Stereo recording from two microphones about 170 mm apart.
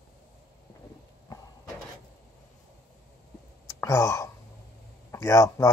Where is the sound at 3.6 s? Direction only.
15° left (ahead or behind).